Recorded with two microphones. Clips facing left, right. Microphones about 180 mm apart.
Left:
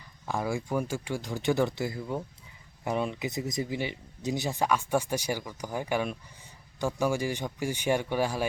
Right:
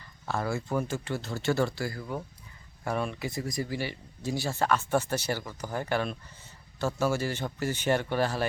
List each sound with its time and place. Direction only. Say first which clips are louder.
0.3 s speech: even; 15° left (ahead or behind)